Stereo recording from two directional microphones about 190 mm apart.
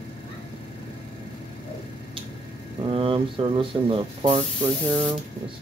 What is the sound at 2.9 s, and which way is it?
Speech, 30° right (ahead or behind).